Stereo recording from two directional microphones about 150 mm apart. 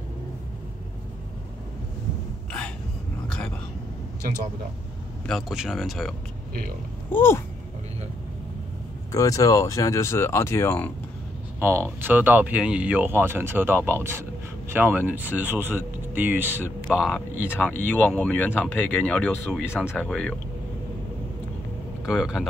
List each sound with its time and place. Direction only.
3.3 s whispering: 5° left (ahead or behind)
5.2 s speech: centre (ahead or behind)
7.1 s speech: 15° left (ahead or behind)
9.1 s speech: 25° left (ahead or behind)
11.6 s speech: 15° right (ahead or behind)
16.9 s speech: centre (ahead or behind)
17.5 s speech: 10° left (ahead or behind)
22.0 s speech: 5° right (ahead or behind)